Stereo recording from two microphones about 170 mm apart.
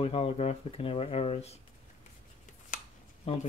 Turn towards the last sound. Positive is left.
turn(degrees=35)  # may be behind; listen again after turning